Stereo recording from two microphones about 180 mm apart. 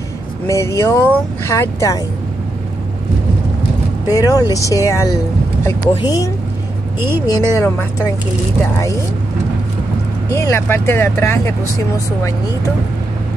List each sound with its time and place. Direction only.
0.5 s speech: 15° left (ahead or behind)
4.1 s speech: 20° left (ahead or behind)
10.3 s speech: 15° left (ahead or behind)